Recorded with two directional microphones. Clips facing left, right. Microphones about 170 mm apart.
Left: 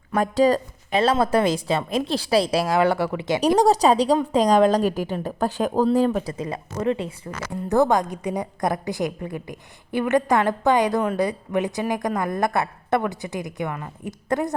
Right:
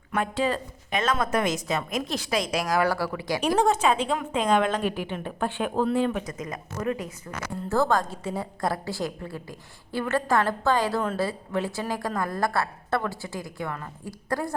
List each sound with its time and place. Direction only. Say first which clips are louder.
0.1 s a woman's voice: left 7 dB; 40° left (ahead or behind); by 3.4 s 20° left (ahead or behind)
3.6 s a woman's voice: left 5 dB; 35° left (ahead or behind); by 14.5 s 20° left (ahead or behind)